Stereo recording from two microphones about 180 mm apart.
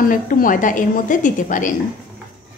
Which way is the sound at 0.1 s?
50° left (ahead or behind).